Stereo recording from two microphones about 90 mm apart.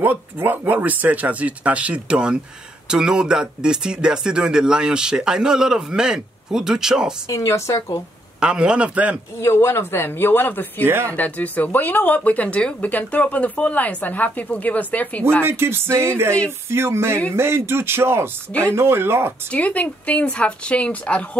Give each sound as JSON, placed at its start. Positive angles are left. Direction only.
{"t": 0.0, "sound": "speech", "side_deg": -20}
{"t": 7.2, "sound": "speech", "side_deg": 35}
{"t": 8.4, "sound": "speech", "side_deg": -10}
{"t": 9.4, "sound": "speech", "side_deg": 30}
{"t": 15.4, "sound": "speech", "side_deg": -25}
{"t": 19.5, "sound": "speech", "side_deg": 15}